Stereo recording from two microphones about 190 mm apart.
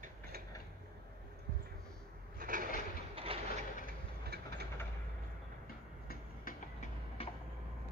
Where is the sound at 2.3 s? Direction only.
45° right (ahead or behind).